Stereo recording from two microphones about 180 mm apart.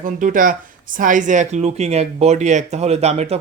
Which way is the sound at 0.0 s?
50° right (ahead or behind).